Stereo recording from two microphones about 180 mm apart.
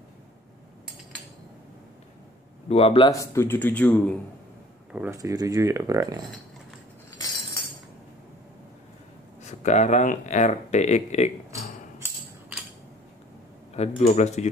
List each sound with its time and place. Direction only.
2.7 s speech: 30° left (ahead or behind)
3.1 s speech: 15° left (ahead or behind)
4.9 s speech: 15° right (ahead or behind)
9.5 s speech: 40° left (ahead or behind)
13.7 s speech: 35° left (ahead or behind)